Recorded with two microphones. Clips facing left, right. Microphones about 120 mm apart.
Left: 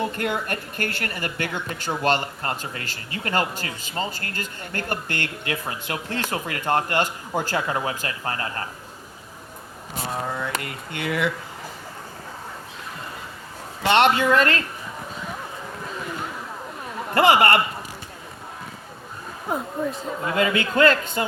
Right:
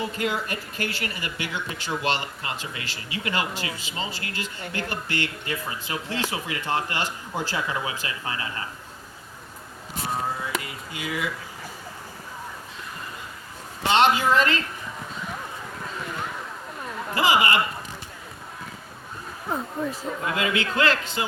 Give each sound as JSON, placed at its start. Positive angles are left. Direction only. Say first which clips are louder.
{"t": 0.0, "sound": "speech", "louder": "left 2 dB", "side_deg": 55}
{"t": 5.5, "sound": "speech", "louder": "left 2 dB", "side_deg": 65}
{"t": 10.3, "sound": "speech", "louder": "left 2 dB", "side_deg": 60}
{"t": 13.8, "sound": "speech", "louder": "left 2 dB", "side_deg": 60}
{"t": 17.2, "sound": "speech", "louder": "left 5 dB", "side_deg": 60}
{"t": 19.5, "sound": "speech", "louder": "left 2 dB", "side_deg": 5}
{"t": 20.7, "sound": "speech", "louder": "left 8 dB", "side_deg": 50}